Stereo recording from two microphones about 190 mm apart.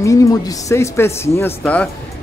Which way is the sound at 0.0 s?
15° left (ahead or behind).